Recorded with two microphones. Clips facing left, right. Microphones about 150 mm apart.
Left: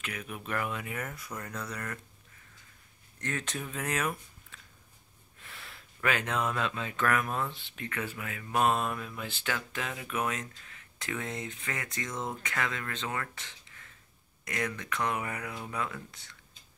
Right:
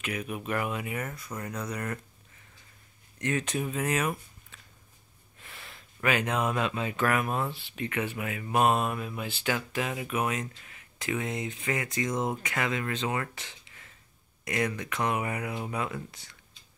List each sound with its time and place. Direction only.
0.0 s speech: 15° right (ahead or behind)
1.4 s speech: 15° right (ahead or behind)
3.2 s speech: 15° right (ahead or behind)
5.4 s a sound: 5° right (ahead or behind)
5.9 s speech: 15° right (ahead or behind)